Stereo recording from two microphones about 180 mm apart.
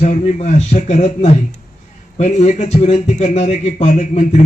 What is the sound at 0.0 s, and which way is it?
A man's voice, 40° left (ahead or behind).